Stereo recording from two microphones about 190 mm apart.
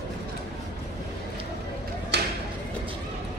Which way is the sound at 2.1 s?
60° right (ahead or behind).